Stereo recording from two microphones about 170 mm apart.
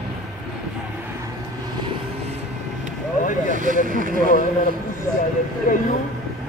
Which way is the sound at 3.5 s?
50° right (ahead or behind).